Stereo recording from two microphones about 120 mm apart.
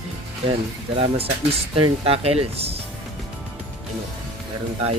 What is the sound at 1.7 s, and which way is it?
Speech, 50° right (ahead or behind).